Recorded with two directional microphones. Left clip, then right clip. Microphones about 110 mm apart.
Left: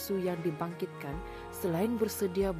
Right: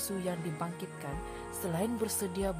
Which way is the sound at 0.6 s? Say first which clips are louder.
Left 2 dB; 35° left (ahead or behind).